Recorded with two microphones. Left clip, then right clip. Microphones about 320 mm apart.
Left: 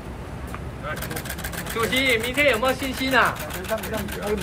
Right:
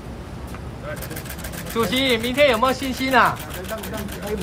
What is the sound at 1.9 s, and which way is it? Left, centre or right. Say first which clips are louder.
Speech: left 1 dB; centre.